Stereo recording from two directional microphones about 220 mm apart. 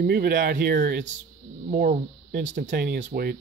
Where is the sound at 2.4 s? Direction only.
35° right (ahead or behind).